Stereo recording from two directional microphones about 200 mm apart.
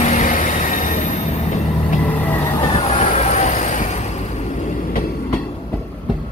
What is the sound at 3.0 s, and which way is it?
Vehicle, 35° left (ahead or behind).